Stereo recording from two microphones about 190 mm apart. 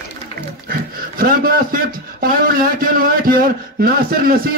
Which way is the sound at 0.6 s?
50° right (ahead or behind).